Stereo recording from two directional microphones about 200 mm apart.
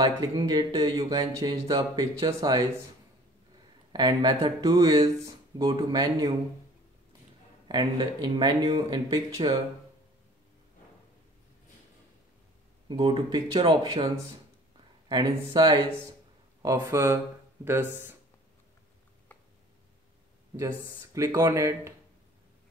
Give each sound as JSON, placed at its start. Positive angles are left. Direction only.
{"t": 0.0, "sound": "speech", "side_deg": -20}
{"t": 3.9, "sound": "speech", "side_deg": -20}
{"t": 7.6, "sound": "speech", "side_deg": -20}
{"t": 12.8, "sound": "speech", "side_deg": -25}
{"t": 20.8, "sound": "speech", "side_deg": -15}